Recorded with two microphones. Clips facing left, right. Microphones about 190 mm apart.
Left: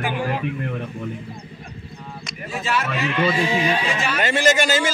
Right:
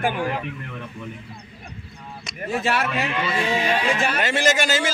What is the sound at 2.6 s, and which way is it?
Speech, 65° right (ahead or behind).